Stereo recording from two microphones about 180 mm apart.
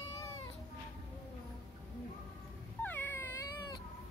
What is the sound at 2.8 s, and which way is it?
Cat, 10° left (ahead or behind).